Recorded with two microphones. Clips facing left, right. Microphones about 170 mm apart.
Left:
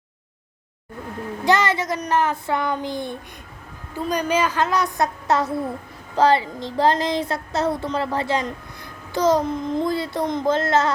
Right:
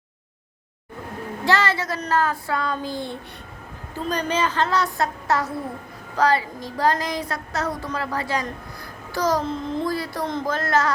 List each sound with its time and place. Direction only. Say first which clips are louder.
1.5 s child singing: left 2 dB; 20° left (ahead or behind)
3.9 s a woman's voice: left 3 dB; 10° left (ahead or behind)
6.1 s child singing: left 3 dB; 25° left (ahead or behind)